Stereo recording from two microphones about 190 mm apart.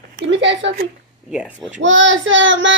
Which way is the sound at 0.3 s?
75° right (ahead or behind).